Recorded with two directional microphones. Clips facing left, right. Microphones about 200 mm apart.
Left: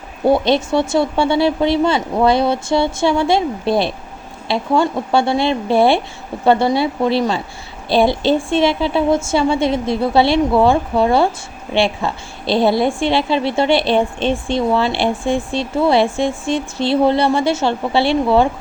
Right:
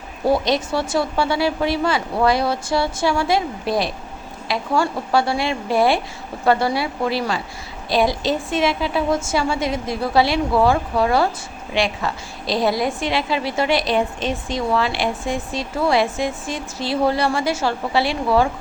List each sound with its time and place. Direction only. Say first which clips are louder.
0.3 s a woman's voice: left 4 dB; 25° left (ahead or behind)